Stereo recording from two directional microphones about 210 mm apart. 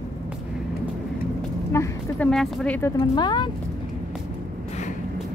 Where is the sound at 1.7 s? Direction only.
10° left (ahead or behind).